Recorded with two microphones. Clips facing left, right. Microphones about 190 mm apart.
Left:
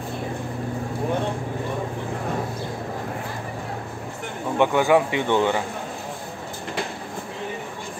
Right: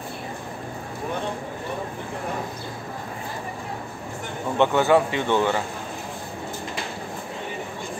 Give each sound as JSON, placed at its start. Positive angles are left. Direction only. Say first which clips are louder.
{"t": 4.6, "sound": "speech", "louder": "even", "side_deg": 15}